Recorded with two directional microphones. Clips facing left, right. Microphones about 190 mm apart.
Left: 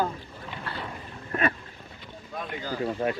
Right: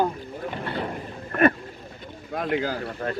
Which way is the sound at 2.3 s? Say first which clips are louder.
Right 10 dB; 70° right (ahead or behind).